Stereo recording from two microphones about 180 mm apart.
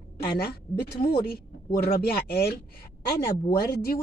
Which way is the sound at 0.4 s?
60° left (ahead or behind).